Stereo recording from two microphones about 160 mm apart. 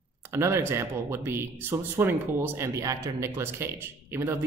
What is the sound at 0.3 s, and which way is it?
Speech, 15° right (ahead or behind).